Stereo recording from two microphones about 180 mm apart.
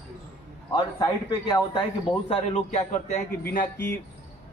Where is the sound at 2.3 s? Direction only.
35° left (ahead or behind).